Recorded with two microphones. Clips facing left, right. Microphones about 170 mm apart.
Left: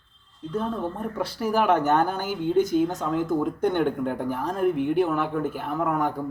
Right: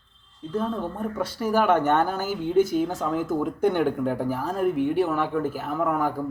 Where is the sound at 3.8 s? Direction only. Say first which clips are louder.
Right 1 dB; 40° right (ahead or behind).